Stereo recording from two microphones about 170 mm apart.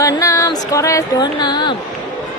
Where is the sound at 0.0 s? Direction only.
20° left (ahead or behind).